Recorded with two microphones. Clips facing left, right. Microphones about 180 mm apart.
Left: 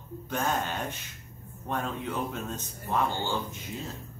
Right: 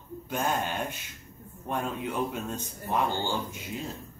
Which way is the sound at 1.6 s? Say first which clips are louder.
Right 1 dB; 10° right (ahead or behind).